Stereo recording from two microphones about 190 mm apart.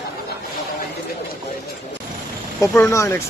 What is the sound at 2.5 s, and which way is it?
Speech, 15° left (ahead or behind).